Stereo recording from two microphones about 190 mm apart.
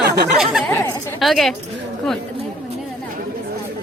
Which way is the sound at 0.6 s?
15° left (ahead or behind).